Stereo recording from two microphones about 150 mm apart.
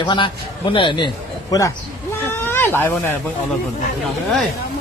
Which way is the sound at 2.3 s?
15° left (ahead or behind).